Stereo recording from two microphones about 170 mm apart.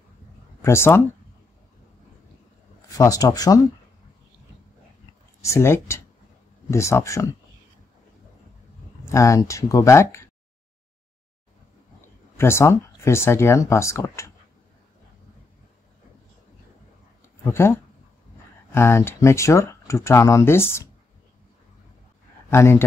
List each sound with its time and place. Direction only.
0.6 s speech: 15° left (ahead or behind)
2.9 s speech: 20° left (ahead or behind)
5.4 s speech: 15° left (ahead or behind)
9.0 s speech: 20° left (ahead or behind)
12.4 s speech: 15° left (ahead or behind)
17.5 s speech: 15° left (ahead or behind)
22.5 s speech: 15° left (ahead or behind)